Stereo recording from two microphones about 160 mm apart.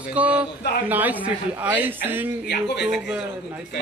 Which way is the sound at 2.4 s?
90° left.